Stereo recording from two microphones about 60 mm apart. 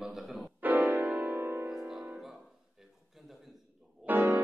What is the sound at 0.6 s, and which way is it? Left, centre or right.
Music, right.